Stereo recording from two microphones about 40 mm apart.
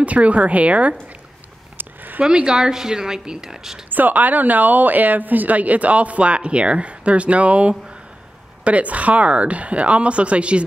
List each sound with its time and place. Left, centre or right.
0.0 s a woman's voice: right
2.2 s a woman's voice: centre
3.9 s a woman's voice: right